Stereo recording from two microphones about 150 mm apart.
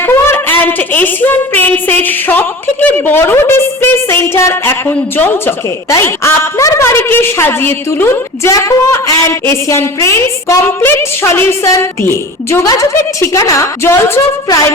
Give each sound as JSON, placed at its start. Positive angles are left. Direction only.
{"t": 0.0, "sound": "a woman's voice", "side_deg": 15}
{"t": 13.1, "sound": "a woman's voice", "side_deg": 20}